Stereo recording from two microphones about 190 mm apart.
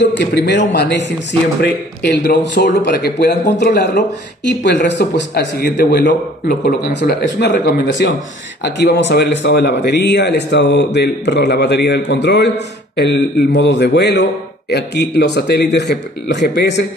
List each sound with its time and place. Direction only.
0.0 s speech: 60° left (ahead or behind)